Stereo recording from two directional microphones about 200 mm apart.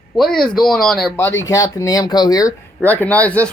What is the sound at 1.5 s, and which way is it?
Speech, 15° left (ahead or behind).